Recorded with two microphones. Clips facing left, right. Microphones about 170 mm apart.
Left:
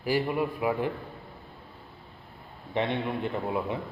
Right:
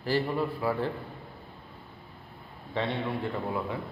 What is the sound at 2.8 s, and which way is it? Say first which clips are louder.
A man's voice: left 2 dB; 20° left (ahead or behind).